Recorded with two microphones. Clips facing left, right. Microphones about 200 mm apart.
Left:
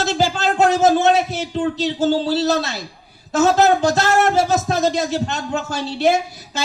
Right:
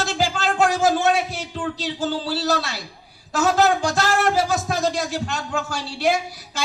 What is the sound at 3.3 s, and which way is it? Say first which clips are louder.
Speech: left 4 dB; 25° left (ahead or behind).